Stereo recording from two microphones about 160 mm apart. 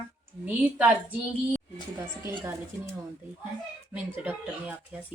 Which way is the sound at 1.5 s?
15° right (ahead or behind).